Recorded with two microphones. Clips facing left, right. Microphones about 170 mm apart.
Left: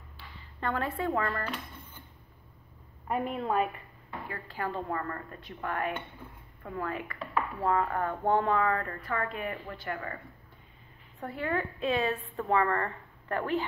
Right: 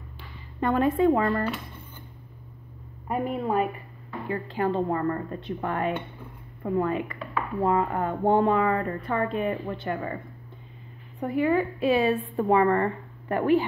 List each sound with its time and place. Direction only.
0.6 s a woman's voice: 15° right (ahead or behind)
3.1 s a woman's voice: 5° right (ahead or behind)
4.3 s speech: 25° right (ahead or behind)
11.1 s a woman's voice: 15° right (ahead or behind)